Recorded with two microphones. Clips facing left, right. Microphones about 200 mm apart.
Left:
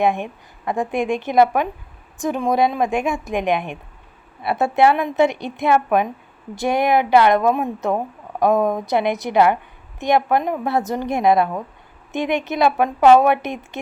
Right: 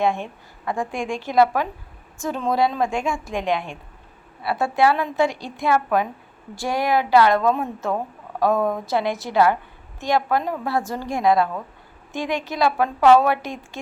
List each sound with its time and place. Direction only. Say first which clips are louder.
0.0 s a woman's voice: left 3 dB; 15° left (ahead or behind)